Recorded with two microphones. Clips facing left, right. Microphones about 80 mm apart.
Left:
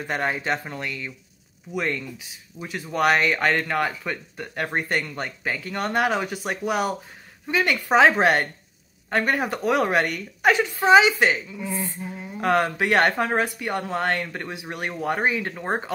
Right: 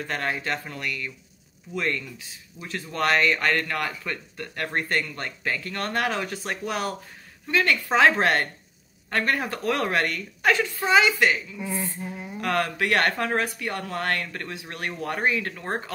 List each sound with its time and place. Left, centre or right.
0.0 s speech: centre